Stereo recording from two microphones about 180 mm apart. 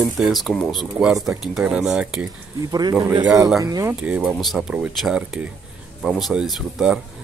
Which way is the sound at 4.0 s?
5° right (ahead or behind).